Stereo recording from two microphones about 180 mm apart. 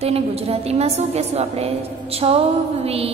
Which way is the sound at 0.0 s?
35° right (ahead or behind).